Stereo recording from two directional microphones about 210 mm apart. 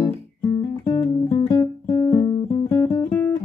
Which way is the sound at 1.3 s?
20° left (ahead or behind).